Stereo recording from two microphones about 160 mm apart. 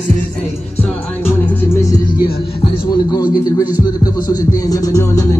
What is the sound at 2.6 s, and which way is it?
A man's voice, 25° left (ahead or behind).